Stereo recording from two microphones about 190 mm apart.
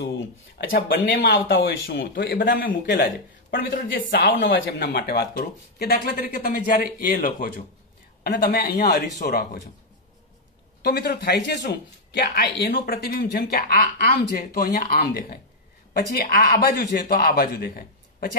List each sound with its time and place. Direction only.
0.7 s speech: 50° left (ahead or behind); by 2.5 s 70° left (ahead or behind)
2.5 s speech: 50° left (ahead or behind)
10.8 s a man's voice: 60° left (ahead or behind)